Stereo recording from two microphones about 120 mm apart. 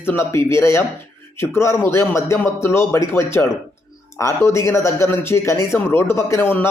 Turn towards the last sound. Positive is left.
turn(degrees=20)  # may be behind; listen again after turning